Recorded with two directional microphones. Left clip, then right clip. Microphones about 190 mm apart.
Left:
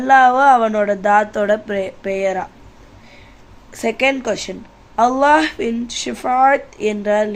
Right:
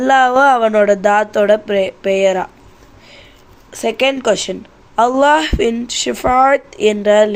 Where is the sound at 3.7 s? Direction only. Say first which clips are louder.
Right 2 dB; 20° right (ahead or behind).